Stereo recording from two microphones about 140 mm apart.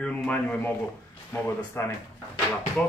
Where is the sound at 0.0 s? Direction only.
10° left (ahead or behind).